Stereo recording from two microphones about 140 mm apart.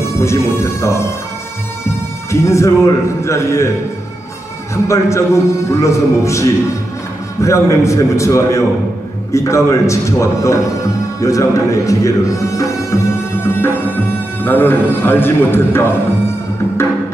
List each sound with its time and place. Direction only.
0.2 s speech: 20° left (ahead or behind)
2.3 s speech: 20° left (ahead or behind)
4.8 s a man's voice: 20° left (ahead or behind)